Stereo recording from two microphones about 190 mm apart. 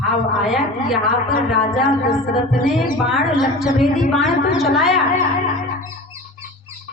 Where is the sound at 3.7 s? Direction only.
Centre (ahead or behind).